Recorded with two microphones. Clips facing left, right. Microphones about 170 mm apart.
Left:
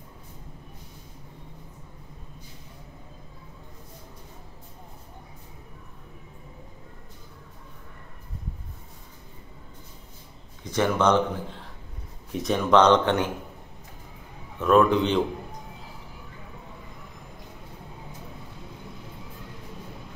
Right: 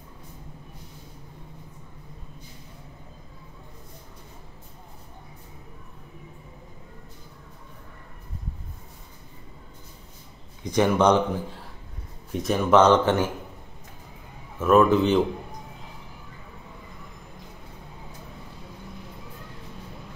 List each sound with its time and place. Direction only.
10.6 s speech: 15° right (ahead or behind)
12.4 s speech: 5° right (ahead or behind)
14.6 s speech: 5° right (ahead or behind)